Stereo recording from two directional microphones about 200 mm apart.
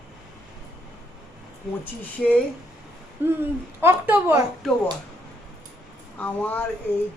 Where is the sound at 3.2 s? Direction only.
10° right (ahead or behind).